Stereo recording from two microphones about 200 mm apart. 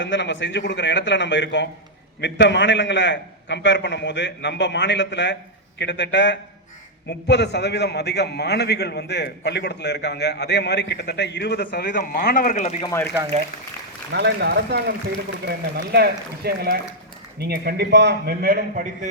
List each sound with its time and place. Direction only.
0.0 s a man's voice: 65° left (ahead or behind)
12.3 s speech: 40° left (ahead or behind)
12.8 s speech: 15° left (ahead or behind)
14.1 s a man's voice: 60° right (ahead or behind)